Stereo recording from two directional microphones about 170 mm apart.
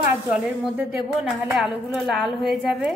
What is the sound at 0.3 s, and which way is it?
A woman's voice, 5° right (ahead or behind).